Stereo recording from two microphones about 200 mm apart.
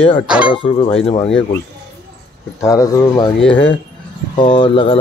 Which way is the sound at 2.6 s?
15° left (ahead or behind).